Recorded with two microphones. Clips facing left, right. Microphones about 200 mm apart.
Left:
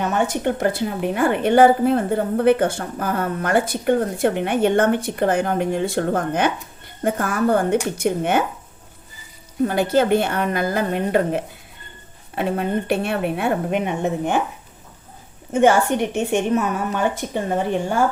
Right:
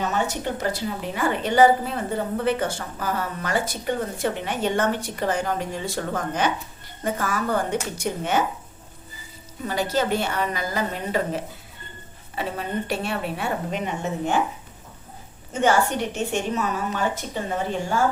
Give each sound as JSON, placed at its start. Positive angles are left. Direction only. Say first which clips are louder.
{"t": 0.0, "sound": "a woman's voice", "louder": "left 5 dB", "side_deg": 55}
{"t": 9.6, "sound": "a woman's voice", "louder": "left 6 dB", "side_deg": 55}
{"t": 15.5, "sound": "a woman's voice", "louder": "left 5 dB", "side_deg": 55}